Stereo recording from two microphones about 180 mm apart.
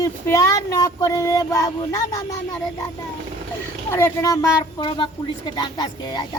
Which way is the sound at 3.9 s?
15° left (ahead or behind).